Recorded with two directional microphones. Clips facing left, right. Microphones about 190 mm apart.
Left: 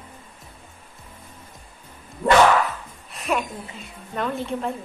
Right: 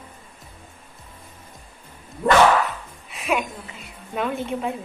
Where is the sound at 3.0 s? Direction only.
5° right (ahead or behind).